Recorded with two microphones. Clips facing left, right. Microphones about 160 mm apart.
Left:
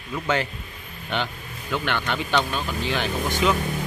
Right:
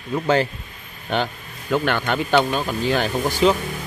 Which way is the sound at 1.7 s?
45° right (ahead or behind).